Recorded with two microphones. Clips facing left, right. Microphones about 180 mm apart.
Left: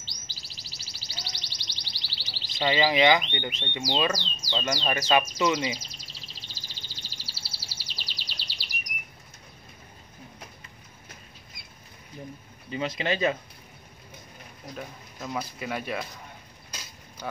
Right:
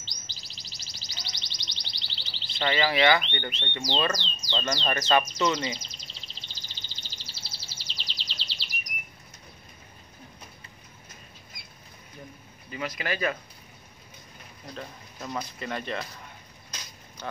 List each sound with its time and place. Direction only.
0.0 s music: 5° left (ahead or behind)
2.2 s a sound: 45° left (ahead or behind)
2.6 s speech: 15° left (ahead or behind)
6.7 s bird vocalization: 10° left (ahead or behind)
12.7 s speech: 25° left (ahead or behind)
14.8 s speech: 5° left (ahead or behind)
17.2 s speech: 5° left (ahead or behind)